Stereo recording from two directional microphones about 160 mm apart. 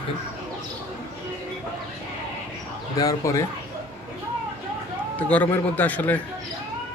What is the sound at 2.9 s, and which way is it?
Speech, 20° left (ahead or behind).